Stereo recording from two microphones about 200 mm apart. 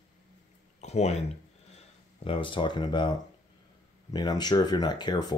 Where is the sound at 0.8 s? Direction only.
35° left (ahead or behind).